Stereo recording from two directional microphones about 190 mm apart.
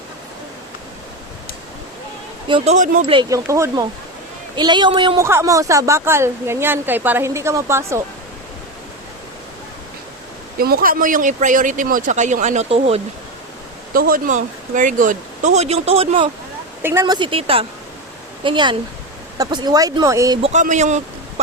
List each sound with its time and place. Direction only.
2.5 s speech: 35° right (ahead or behind)
3.1 s speech: 20° right (ahead or behind)
5.2 s speech: 15° right (ahead or behind)
10.6 s speech: 50° right (ahead or behind); by 13.0 s 30° right (ahead or behind)
13.9 s speech: 50° right (ahead or behind); by 16.3 s 30° right (ahead or behind)
16.8 s speech: 15° right (ahead or behind)
17.2 s speech: 25° right (ahead or behind)
20.4 s speech: 40° right (ahead or behind)